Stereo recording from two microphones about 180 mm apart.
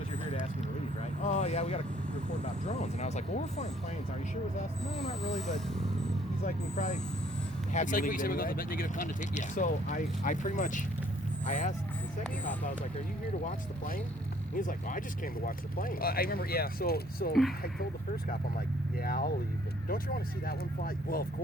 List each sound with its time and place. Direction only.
1.2 s a sound: 40° left (ahead or behind)
2.4 s speech: 40° left (ahead or behind)
6.4 s speech: 40° left (ahead or behind)
13.4 s speech: 50° left (ahead or behind)
19.9 s speech: 55° left (ahead or behind)